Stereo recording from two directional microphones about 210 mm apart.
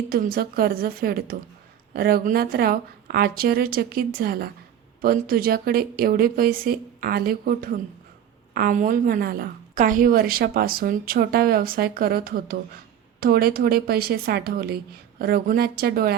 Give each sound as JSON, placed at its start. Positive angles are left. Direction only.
{"t": 0.1, "sound": "a woman's voice", "side_deg": -45}